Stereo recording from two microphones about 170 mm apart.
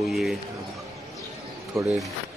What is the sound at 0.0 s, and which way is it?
Speech, centre (ahead or behind).